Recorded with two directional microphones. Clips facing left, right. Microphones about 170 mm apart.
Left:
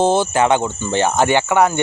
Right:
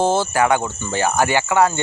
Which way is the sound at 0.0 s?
20° left (ahead or behind).